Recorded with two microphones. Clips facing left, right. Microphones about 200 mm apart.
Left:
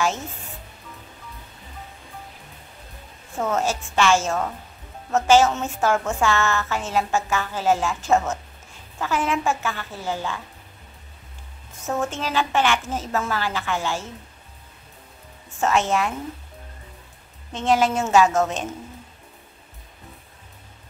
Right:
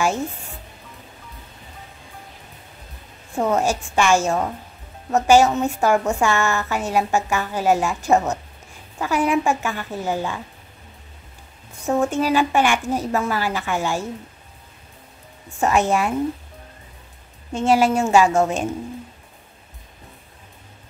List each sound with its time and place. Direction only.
3.3 s a woman's voice: 15° right (ahead or behind)
11.8 s a woman's voice: 15° right (ahead or behind)
15.6 s a woman's voice: 15° right (ahead or behind)
17.5 s a woman's voice: 10° right (ahead or behind)